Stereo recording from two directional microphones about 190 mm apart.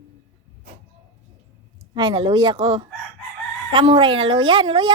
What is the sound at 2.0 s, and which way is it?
Speech, 25° right (ahead or behind).